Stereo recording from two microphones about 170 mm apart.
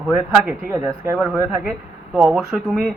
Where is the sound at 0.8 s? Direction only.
20° right (ahead or behind).